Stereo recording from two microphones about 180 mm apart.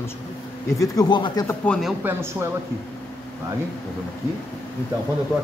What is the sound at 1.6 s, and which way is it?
Speech, 5° left (ahead or behind).